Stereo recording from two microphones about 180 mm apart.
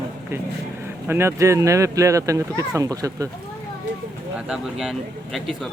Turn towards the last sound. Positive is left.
turn(degrees=0)  # may be behind; listen again after turning